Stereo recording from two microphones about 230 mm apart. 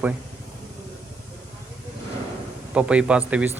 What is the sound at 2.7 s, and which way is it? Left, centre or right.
Speech, centre.